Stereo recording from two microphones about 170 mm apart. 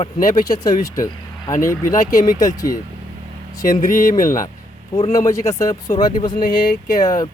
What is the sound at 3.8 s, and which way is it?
Speech, 50° left (ahead or behind).